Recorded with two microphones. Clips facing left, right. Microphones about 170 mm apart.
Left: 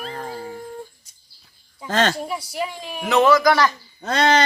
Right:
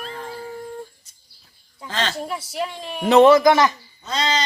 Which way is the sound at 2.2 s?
Centre (ahead or behind).